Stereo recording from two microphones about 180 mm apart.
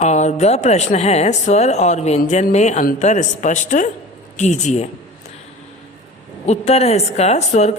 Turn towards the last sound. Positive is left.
turn(degrees=40)  # may be behind; listen again after turning